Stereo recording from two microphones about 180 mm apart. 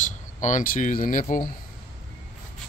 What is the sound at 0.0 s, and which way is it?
Speech, 45° left (ahead or behind).